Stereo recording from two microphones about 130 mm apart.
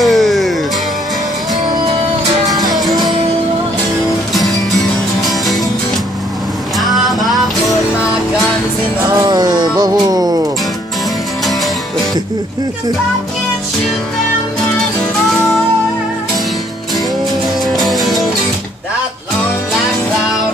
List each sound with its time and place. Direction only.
0.0 s music: centre (ahead or behind)
2.4 s music: 30° right (ahead or behind)
4.6 s music: centre (ahead or behind)
6.8 s music: centre (ahead or behind)
9.1 s music: 30° right (ahead or behind)
17.7 s music: centre (ahead or behind)